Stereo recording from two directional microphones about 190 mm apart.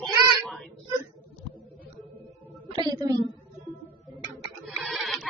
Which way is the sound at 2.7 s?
20° right (ahead or behind).